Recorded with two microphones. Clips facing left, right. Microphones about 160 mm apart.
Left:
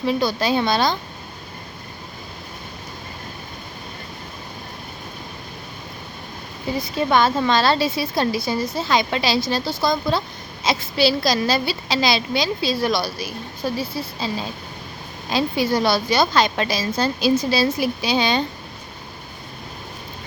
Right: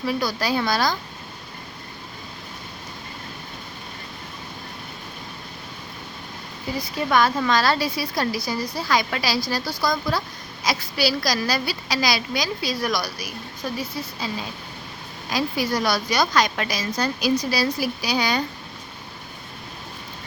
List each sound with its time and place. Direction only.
0.0 s a woman's voice: 25° left (ahead or behind)
6.7 s a woman's voice: 25° left (ahead or behind)
15.3 s a woman's voice: 25° left (ahead or behind)